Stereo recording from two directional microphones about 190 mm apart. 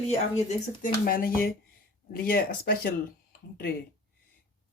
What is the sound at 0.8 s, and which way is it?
Speech, 50° left (ahead or behind).